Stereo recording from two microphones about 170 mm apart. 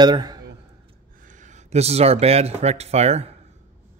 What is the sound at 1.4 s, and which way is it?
Speech, 40° right (ahead or behind).